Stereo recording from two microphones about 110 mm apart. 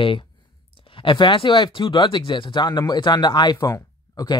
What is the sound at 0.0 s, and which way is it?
Speech, 50° left (ahead or behind).